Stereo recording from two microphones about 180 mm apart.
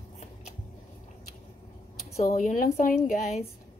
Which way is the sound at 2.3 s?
45° left (ahead or behind).